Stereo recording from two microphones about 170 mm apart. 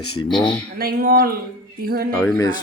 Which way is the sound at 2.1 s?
5° left (ahead or behind).